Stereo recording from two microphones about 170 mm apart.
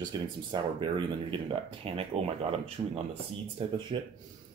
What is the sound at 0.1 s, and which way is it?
Speech, 25° right (ahead or behind).